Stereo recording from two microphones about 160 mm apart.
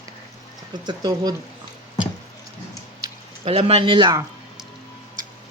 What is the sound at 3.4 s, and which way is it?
Speech, 35° right (ahead or behind).